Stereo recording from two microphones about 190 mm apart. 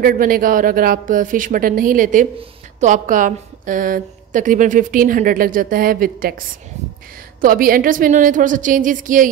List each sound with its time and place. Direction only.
0.0 s a woman's voice: 50° right (ahead or behind)
7.4 s a woman's voice: 50° right (ahead or behind)